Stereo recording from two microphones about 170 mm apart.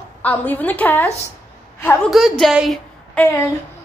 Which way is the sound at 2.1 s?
Centre (ahead or behind).